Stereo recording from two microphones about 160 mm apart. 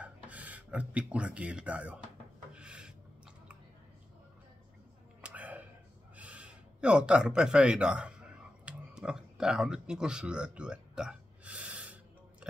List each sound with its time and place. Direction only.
0.0 s speech: 10° right (ahead or behind)
2.5 s filing: 5° right (ahead or behind)
5.2 s a sound: 10° right (ahead or behind)